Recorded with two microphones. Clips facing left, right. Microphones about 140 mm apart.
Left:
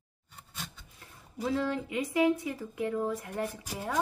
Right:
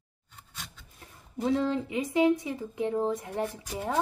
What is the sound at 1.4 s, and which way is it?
Speech, 30° right (ahead or behind).